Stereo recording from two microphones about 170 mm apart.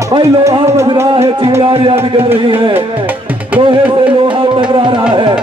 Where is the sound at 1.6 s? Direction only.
35° right (ahead or behind).